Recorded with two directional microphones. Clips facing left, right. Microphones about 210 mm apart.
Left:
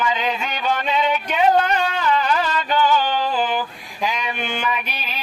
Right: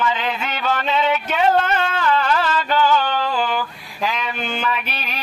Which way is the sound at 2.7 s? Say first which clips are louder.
Even; 20° left (ahead or behind).